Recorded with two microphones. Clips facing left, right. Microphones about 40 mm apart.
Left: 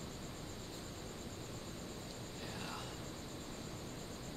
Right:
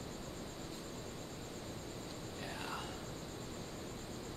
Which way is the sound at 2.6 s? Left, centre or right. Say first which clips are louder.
Right 3 dB; centre.